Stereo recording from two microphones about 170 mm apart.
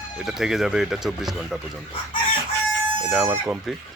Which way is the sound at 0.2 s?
Centre (ahead or behind).